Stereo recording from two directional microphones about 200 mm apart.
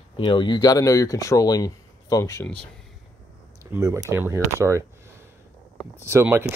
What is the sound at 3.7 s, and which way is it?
Speech, 15° right (ahead or behind).